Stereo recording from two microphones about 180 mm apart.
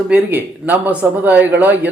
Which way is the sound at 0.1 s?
10° right (ahead or behind).